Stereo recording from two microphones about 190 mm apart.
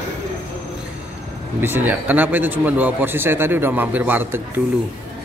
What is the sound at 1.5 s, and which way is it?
A man's voice, 10° right (ahead or behind).